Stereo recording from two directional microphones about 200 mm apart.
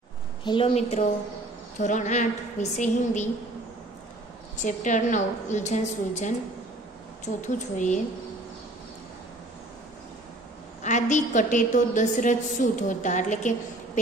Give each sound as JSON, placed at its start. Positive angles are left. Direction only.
{"t": 0.4, "sound": "a woman's voice", "side_deg": 25}
{"t": 4.6, "sound": "a woman's voice", "side_deg": 40}
{"t": 7.4, "sound": "a woman's voice", "side_deg": 40}
{"t": 10.8, "sound": "a woman's voice", "side_deg": 35}